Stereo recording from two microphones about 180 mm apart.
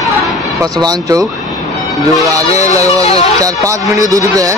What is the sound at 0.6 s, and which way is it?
Speech, 20° right (ahead or behind).